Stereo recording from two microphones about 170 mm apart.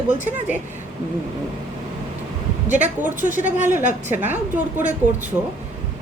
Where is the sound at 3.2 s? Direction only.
50° right (ahead or behind).